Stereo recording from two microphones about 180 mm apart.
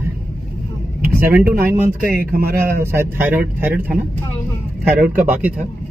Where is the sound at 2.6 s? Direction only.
15° right (ahead or behind).